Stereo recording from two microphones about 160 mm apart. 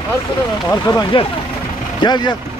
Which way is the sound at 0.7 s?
20° left (ahead or behind).